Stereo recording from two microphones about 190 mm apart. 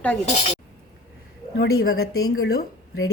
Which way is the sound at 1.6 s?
90° left.